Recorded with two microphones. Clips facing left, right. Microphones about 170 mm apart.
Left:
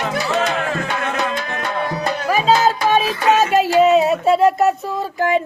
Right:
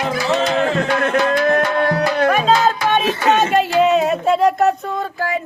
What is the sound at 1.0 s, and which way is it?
Tabla, 55° right (ahead or behind).